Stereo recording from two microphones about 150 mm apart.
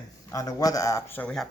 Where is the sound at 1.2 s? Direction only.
5° left (ahead or behind).